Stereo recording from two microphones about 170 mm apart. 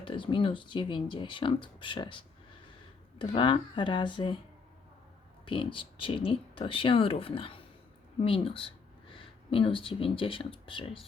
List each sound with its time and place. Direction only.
0.0 s speech: 30° left (ahead or behind)
5.5 s speech: 30° left (ahead or behind)